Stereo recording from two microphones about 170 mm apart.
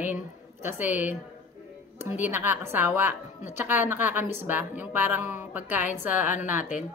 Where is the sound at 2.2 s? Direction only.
10° right (ahead or behind).